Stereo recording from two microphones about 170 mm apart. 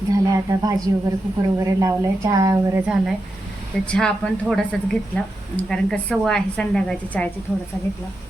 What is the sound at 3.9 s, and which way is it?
A woman's voice, 5° left (ahead or behind).